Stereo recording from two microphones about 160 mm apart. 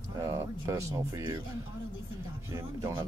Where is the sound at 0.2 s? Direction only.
20° right (ahead or behind).